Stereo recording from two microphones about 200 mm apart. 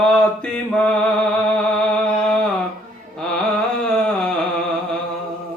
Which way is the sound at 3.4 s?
5° left (ahead or behind).